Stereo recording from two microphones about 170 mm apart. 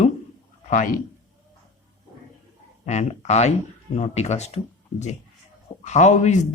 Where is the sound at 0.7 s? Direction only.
50° left (ahead or behind).